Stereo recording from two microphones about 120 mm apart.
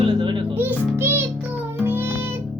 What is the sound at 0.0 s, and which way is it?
Music, 40° right (ahead or behind).